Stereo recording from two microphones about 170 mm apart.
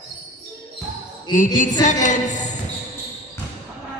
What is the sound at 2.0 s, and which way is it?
Speech, 45° left (ahead or behind).